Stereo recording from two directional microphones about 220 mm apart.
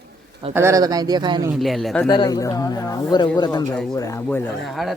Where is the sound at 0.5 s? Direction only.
10° right (ahead or behind).